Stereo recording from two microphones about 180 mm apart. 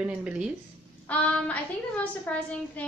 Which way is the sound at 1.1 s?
10° left (ahead or behind).